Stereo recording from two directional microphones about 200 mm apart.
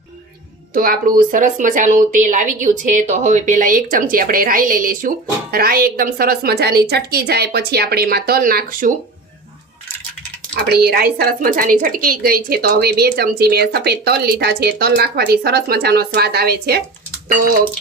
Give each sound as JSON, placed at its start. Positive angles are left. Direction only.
{"t": 0.7, "sound": "speech", "side_deg": -45}
{"t": 10.5, "sound": "speech", "side_deg": -50}